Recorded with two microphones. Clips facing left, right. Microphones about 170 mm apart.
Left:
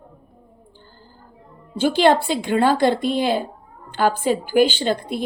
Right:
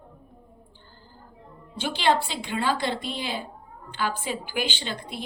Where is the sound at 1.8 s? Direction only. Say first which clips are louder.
Left 8 dB; 50° left (ahead or behind).